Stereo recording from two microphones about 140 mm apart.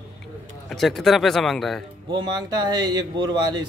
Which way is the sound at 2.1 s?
30° right (ahead or behind).